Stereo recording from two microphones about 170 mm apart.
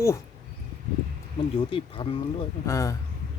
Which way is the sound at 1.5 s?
30° left (ahead or behind).